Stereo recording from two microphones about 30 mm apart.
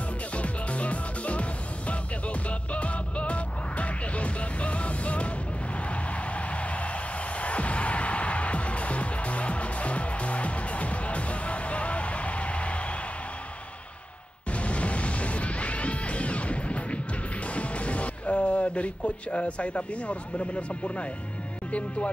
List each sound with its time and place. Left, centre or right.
0.4 s music: left
7.3 s music: left
14.5 s music: left
17.6 s speech: left